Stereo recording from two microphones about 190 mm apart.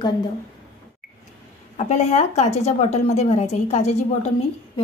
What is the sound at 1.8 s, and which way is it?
A woman's voice, 35° left (ahead or behind).